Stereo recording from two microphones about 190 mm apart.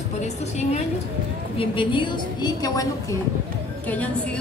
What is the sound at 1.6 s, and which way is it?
A woman's voice, 25° left (ahead or behind).